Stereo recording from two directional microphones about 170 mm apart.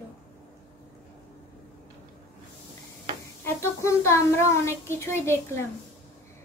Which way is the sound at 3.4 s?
15° left (ahead or behind).